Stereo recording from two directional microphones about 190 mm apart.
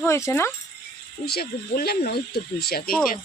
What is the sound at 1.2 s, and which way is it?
Speech, 55° left (ahead or behind).